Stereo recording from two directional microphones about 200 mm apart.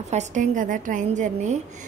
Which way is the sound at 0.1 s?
35° right (ahead or behind).